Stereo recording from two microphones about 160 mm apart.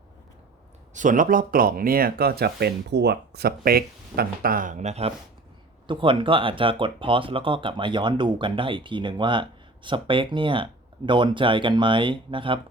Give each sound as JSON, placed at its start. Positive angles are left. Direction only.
{"t": 0.9, "sound": "speech", "side_deg": -55}
{"t": 5.9, "sound": "speech", "side_deg": -30}